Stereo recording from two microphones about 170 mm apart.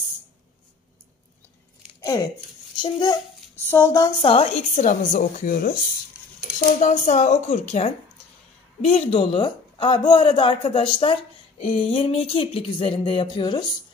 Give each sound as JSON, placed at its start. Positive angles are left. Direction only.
{"t": 2.0, "sound": "a sound", "side_deg": 20}
{"t": 2.8, "sound": "a child's voice", "side_deg": 25}
{"t": 3.6, "sound": "speech", "side_deg": 15}
{"t": 4.2, "sound": "a woman's voice", "side_deg": 35}
{"t": 4.8, "sound": "a woman's voice", "side_deg": 50}
{"t": 6.8, "sound": "a woman's voice", "side_deg": 45}